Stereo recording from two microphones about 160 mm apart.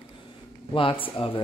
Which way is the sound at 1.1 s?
35° left (ahead or behind).